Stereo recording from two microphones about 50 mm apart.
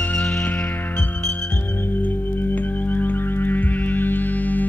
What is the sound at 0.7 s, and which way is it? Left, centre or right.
Music, left.